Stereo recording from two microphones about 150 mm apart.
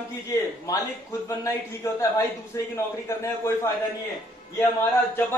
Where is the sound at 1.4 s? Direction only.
20° left (ahead or behind).